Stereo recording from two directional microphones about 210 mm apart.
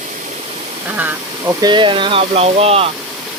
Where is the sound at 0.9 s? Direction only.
10° right (ahead or behind).